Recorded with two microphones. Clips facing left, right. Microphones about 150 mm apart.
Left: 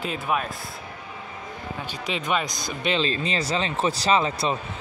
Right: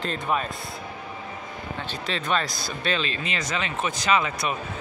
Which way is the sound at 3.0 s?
35° left (ahead or behind).